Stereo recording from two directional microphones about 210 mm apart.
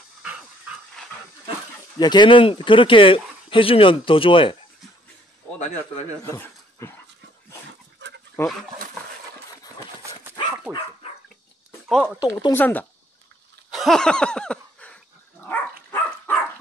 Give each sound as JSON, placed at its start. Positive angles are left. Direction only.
{"t": 0.2, "sound": "dog", "side_deg": -5}
{"t": 2.0, "sound": "speech", "side_deg": 20}
{"t": 6.2, "sound": "speech", "side_deg": 10}
{"t": 8.4, "sound": "speech", "side_deg": 15}
{"t": 10.7, "sound": "speech", "side_deg": -5}
{"t": 11.9, "sound": "speech", "side_deg": 0}
{"t": 12.3, "sound": "speech", "side_deg": 20}
{"t": 12.5, "sound": "speech", "side_deg": 10}
{"t": 13.7, "sound": "a sound", "side_deg": 0}